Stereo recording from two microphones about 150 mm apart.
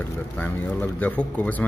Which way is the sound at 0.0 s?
10° left (ahead or behind).